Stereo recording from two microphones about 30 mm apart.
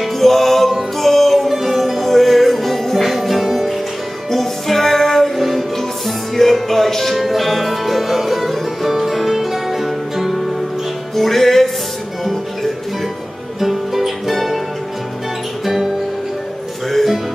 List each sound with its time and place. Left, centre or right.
0.0 s music: centre
11.1 s music: centre
13.6 s music: centre